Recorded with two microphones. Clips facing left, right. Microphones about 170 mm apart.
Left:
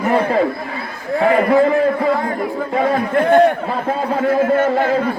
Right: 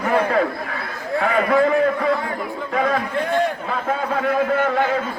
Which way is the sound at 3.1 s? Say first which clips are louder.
Left 9 dB; 65° left (ahead or behind).